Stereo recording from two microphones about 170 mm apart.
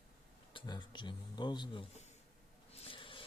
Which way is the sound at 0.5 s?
25° left (ahead or behind).